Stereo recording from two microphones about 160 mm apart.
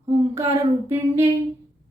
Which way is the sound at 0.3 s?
20° right (ahead or behind).